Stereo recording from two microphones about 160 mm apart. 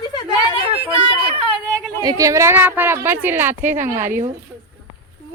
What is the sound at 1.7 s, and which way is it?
Speech, 20° right (ahead or behind).